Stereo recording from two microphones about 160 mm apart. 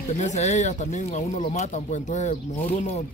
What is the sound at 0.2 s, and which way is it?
Speech, 45° left (ahead or behind).